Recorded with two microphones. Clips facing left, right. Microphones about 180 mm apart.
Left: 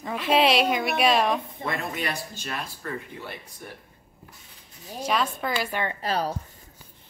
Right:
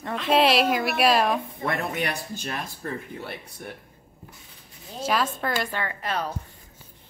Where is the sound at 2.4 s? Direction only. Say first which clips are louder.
Right 2 dB; 40° right (ahead or behind).